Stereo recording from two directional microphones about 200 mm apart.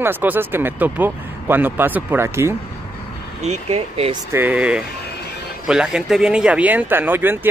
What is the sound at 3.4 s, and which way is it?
Speech, 35° right (ahead or behind).